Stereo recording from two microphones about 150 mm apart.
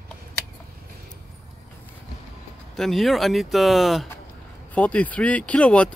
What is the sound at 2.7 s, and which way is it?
Speech, centre (ahead or behind).